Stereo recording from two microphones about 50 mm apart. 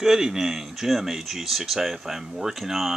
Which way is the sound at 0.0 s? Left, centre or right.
Centre.